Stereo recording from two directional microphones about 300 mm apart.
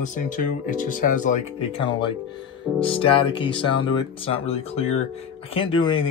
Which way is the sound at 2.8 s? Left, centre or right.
Centre.